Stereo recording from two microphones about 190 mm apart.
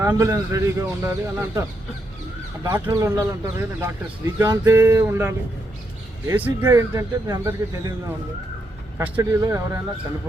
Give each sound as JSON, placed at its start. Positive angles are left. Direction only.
{"t": 0.0, "sound": "speech", "side_deg": -15}
{"t": 2.6, "sound": "speech", "side_deg": -20}
{"t": 9.0, "sound": "speech", "side_deg": -10}